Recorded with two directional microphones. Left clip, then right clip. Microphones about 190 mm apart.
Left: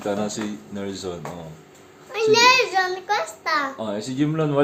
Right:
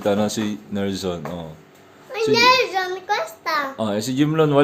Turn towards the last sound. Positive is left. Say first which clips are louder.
# right 5 dB
turn(degrees=-60)  # may be behind; listen again after turning